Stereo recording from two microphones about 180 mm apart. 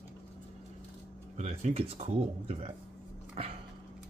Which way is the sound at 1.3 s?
40° right (ahead or behind).